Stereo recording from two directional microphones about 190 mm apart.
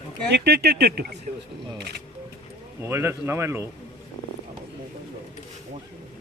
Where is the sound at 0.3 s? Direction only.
60° right (ahead or behind).